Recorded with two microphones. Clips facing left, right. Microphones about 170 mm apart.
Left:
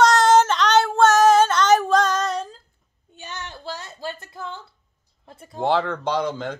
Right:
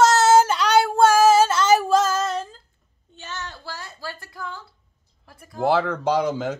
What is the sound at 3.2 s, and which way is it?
Child singing, 15° left (ahead or behind).